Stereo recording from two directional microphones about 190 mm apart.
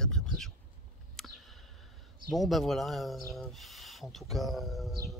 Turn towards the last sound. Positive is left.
turn(degrees=0)  # may be behind; listen again after turning